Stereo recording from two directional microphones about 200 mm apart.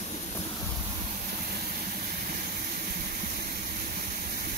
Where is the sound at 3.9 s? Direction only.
50° right (ahead or behind).